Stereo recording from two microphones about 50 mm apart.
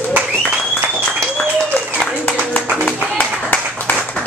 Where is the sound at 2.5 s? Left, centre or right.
Left.